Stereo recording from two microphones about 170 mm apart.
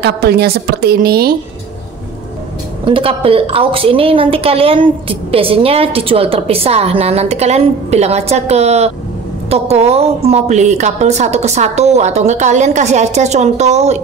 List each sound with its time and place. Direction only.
0.0 s a woman's voice: 70° right (ahead or behind)
2.8 s a woman's voice: 30° right (ahead or behind)